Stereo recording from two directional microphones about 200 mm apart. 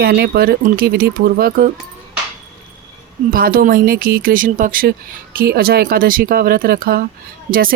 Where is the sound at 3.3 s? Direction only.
45° right (ahead or behind).